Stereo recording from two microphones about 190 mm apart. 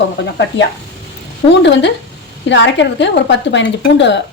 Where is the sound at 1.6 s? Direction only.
70° left (ahead or behind).